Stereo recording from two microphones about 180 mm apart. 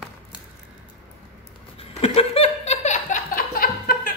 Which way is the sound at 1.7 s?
35° left (ahead or behind).